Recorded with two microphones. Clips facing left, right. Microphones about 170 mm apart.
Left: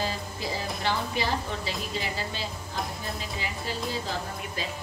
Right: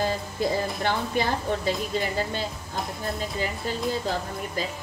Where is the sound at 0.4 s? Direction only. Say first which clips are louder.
Right 6 dB; 50° right (ahead or behind).